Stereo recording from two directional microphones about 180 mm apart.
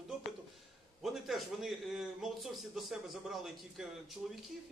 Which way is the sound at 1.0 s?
Centre (ahead or behind).